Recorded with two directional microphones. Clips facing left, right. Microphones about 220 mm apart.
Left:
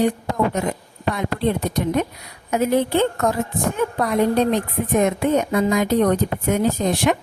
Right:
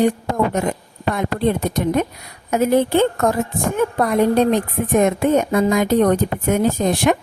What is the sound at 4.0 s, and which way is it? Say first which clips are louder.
Speech: right 2 dB; 50° right (ahead or behind).